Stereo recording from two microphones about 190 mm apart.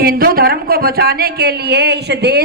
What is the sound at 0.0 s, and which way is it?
Speech, 50° right (ahead or behind).